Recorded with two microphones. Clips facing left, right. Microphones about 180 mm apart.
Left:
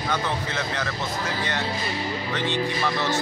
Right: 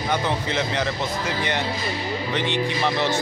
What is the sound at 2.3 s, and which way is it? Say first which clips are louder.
Speech: right 2 dB; 20° right (ahead or behind).